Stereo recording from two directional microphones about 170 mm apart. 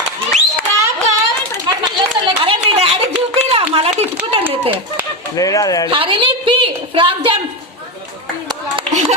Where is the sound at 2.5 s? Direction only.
35° right (ahead or behind).